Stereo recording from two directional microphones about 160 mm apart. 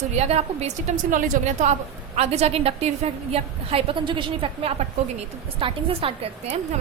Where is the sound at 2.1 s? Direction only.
40° right (ahead or behind).